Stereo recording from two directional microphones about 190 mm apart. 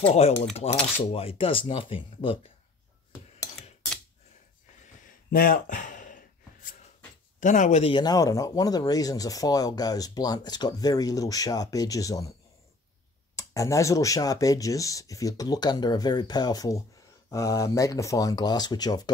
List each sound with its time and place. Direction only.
0.1 s cutlery: 35° left (ahead or behind)
1.1 s speech: 30° left (ahead or behind)
5.3 s a sound: 50° left (ahead or behind)
7.3 s cutlery: 40° left (ahead or behind)
7.9 s speech: 20° left (ahead or behind)
13.4 s speech: 15° left (ahead or behind)